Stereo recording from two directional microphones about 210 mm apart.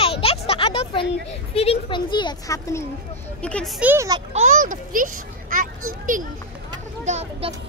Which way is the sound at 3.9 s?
15° right (ahead or behind).